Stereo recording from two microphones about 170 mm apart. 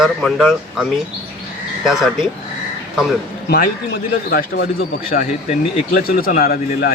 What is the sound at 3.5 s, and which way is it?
A man's voice, 65° left (ahead or behind).